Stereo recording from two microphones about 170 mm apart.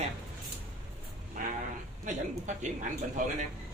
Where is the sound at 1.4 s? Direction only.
50° right (ahead or behind).